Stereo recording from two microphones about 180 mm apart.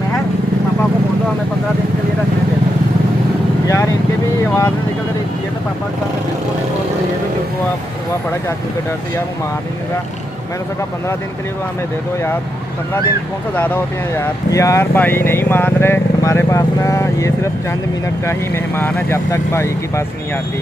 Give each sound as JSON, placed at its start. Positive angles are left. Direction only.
{"t": 3.6, "sound": "vehicle", "side_deg": 15}
{"t": 13.6, "sound": "speech", "side_deg": 10}